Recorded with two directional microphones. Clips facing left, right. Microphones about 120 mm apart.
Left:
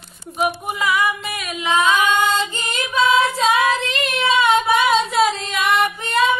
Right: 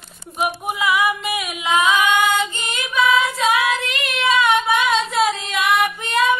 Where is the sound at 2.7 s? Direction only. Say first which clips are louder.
Left 1 dB; 30° left (ahead or behind).